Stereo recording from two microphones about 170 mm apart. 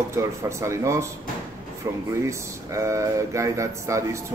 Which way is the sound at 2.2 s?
15° right (ahead or behind).